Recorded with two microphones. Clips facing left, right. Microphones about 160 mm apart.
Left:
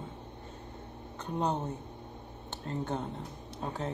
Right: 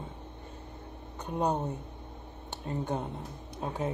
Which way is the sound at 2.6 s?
10° right (ahead or behind).